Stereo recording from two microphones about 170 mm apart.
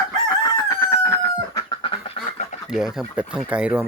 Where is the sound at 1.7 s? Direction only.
30° left (ahead or behind).